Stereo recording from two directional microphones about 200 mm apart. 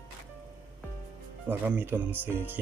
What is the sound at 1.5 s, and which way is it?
Speech, 10° right (ahead or behind).